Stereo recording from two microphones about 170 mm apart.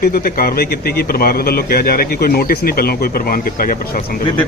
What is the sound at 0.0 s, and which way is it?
A man's voice, 60° left (ahead or behind).